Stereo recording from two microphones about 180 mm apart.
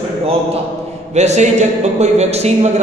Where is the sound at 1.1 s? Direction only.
40° right (ahead or behind).